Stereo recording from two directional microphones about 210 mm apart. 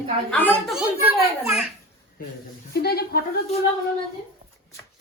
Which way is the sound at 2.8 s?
50° left (ahead or behind).